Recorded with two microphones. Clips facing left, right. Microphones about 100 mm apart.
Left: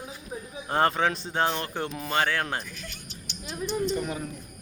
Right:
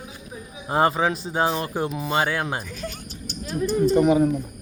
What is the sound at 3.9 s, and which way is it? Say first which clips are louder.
Speech: right 13 dB; 70° right (ahead or behind).